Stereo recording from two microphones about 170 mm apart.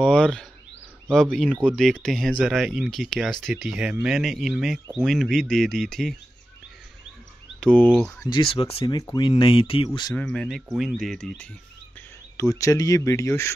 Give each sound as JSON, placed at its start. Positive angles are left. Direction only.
{"t": 0.0, "sound": "speech", "side_deg": 5}
{"t": 7.6, "sound": "speech", "side_deg": 5}
{"t": 8.2, "sound": "speech", "side_deg": 25}
{"t": 9.8, "sound": "speech", "side_deg": 25}
{"t": 10.1, "sound": "speech", "side_deg": 5}
{"t": 12.4, "sound": "speech", "side_deg": 20}